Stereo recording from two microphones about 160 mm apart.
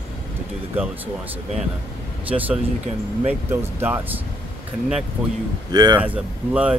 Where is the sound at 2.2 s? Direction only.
10° right (ahead or behind).